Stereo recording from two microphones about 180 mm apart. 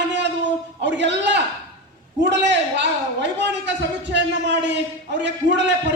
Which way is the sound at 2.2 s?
75° right (ahead or behind).